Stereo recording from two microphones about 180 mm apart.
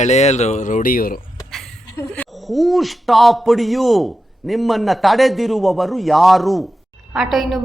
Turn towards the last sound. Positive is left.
turn(degrees=0)  # may be behind; listen again after turning